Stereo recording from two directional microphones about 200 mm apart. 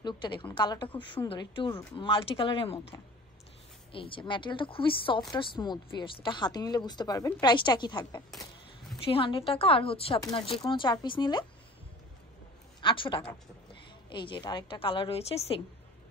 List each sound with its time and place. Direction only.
0.0 s a woman's voice: 25° left (ahead or behind)
3.9 s a woman's voice: 25° left (ahead or behind)
12.8 s a woman's voice: 25° left (ahead or behind)